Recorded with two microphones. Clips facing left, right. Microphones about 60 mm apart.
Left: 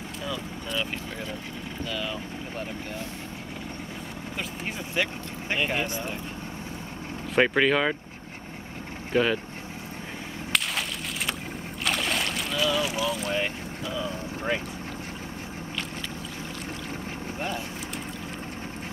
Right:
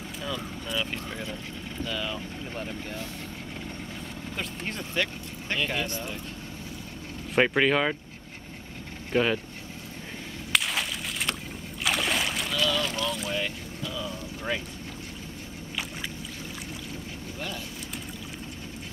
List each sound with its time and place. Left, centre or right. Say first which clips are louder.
0.2 s speech: even; centre
1.9 s speech: even; centre
4.4 s speech: even; centre
5.5 s speech: left 2 dB; centre
7.3 s speech: left 1 dB; centre
9.1 s speech: left 1 dB; centre
10.5 s a sound: right 1 dB; centre
11.8 s boat: right 1 dB; centre
12.5 s speech: left 2 dB; centre
13.3 s boat: left 3 dB; left